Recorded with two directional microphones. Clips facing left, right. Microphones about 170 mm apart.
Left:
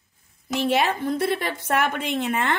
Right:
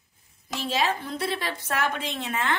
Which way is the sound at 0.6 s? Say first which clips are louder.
Left 5 dB; 60° left (ahead or behind).